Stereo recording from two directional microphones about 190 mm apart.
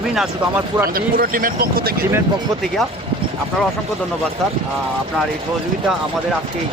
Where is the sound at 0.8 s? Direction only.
50° right (ahead or behind).